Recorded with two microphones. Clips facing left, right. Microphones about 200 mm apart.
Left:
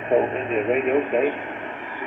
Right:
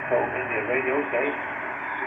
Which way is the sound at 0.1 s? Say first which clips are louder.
Left 5 dB; 40° left (ahead or behind).